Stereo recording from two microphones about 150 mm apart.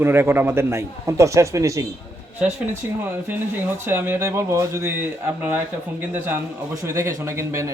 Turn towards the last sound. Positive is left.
turn(degrees=-20)  # may be behind; listen again after turning